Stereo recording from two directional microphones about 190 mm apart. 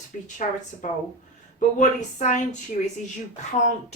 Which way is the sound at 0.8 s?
40° left (ahead or behind).